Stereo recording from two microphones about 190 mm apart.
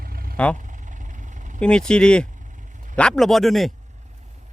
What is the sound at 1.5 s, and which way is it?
A man's voice, 5° left (ahead or behind).